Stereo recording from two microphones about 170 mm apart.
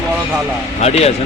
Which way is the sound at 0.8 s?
40° left (ahead or behind).